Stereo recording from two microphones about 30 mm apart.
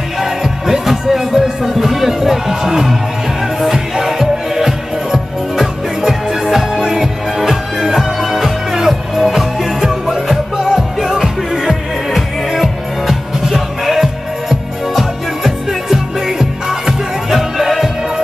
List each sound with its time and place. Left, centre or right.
0.2 s music: centre